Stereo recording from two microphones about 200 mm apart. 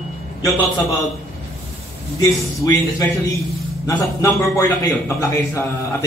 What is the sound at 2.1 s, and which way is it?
A man's voice, 15° left (ahead or behind).